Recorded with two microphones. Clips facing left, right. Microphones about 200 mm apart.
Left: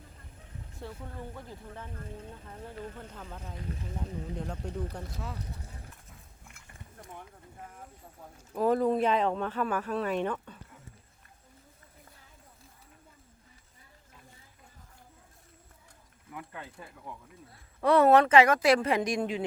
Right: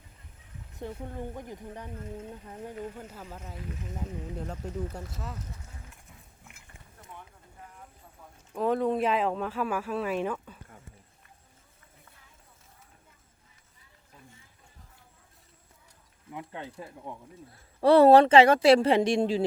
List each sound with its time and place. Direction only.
0.8 s speech: 20° right (ahead or behind)
3.6 s speech: 35° left (ahead or behind)
3.9 s speech: 5° right (ahead or behind)
5.5 s clip-clop: 35° left (ahead or behind)
8.5 s speech: centre (ahead or behind)
16.3 s speech: 20° right (ahead or behind)